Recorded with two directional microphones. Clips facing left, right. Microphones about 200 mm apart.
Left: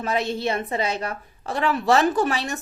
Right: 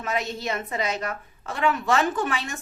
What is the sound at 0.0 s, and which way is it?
A woman's voice, 30° left (ahead or behind).